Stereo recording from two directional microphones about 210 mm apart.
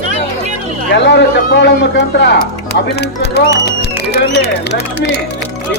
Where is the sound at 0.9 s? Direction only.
55° left (ahead or behind).